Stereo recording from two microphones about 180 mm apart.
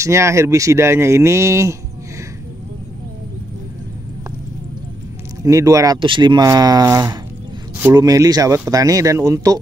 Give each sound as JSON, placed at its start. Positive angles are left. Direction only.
{"t": 0.0, "sound": "speech", "side_deg": -15}
{"t": 5.4, "sound": "speech", "side_deg": -20}